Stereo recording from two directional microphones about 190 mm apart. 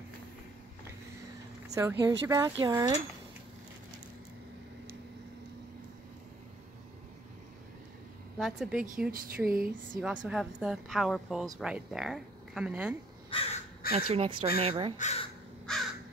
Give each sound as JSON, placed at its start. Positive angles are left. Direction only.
{"t": 1.7, "sound": "speech", "side_deg": -15}
{"t": 8.4, "sound": "a woman's voice", "side_deg": 0}
{"t": 13.3, "sound": "crow", "side_deg": 30}
{"t": 13.9, "sound": "speech", "side_deg": -30}
{"t": 15.0, "sound": "speech", "side_deg": 35}
{"t": 15.7, "sound": "crow", "side_deg": 5}